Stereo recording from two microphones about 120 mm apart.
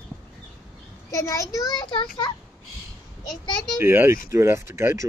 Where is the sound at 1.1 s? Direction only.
25° left (ahead or behind).